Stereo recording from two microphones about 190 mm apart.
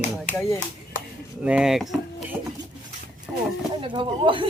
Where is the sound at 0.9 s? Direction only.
45° left (ahead or behind).